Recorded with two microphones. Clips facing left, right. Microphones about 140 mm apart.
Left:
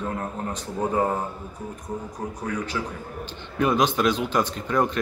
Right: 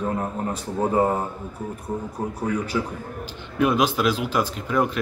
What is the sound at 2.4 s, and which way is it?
A man's voice, 10° right (ahead or behind).